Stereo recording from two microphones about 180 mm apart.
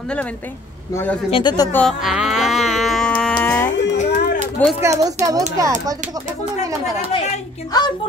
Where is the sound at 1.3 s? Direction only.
25° left (ahead or behind).